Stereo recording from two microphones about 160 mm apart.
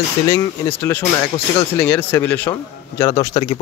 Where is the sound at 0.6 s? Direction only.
15° left (ahead or behind).